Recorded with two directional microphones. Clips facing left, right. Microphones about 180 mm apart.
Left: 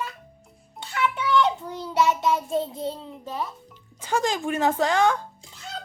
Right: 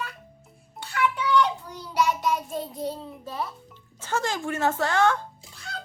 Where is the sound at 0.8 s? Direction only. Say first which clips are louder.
Even; 20° left (ahead or behind).